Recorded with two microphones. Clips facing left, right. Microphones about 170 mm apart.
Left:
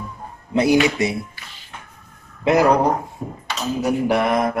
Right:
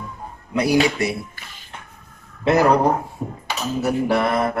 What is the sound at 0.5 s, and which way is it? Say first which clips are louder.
Speech: left 2 dB; 25° left (ahead or behind).